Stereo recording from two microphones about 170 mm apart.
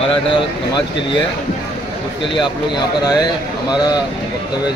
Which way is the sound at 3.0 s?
25° left (ahead or behind).